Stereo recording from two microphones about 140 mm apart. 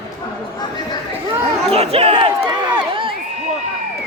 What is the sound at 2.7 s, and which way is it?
Crowd, 40° right (ahead or behind).